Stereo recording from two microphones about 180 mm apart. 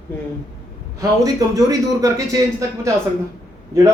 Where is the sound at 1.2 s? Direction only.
20° right (ahead or behind).